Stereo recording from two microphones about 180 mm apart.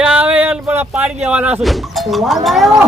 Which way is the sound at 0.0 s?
10° right (ahead or behind).